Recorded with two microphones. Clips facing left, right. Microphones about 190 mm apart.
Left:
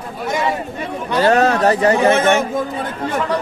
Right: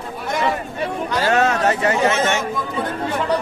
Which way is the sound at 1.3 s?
35° left (ahead or behind).